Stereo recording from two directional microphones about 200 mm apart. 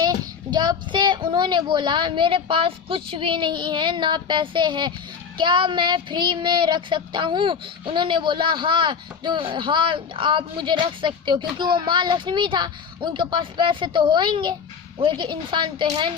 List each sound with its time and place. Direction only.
0.0 s child singing: 20° right (ahead or behind)